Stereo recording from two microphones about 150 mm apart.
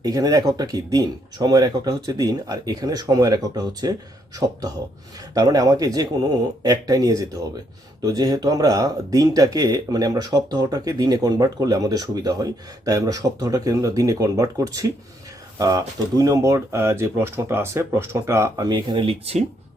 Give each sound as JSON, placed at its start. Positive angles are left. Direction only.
{"t": 0.0, "sound": "speech", "side_deg": -25}
{"t": 5.3, "sound": "speech", "side_deg": -25}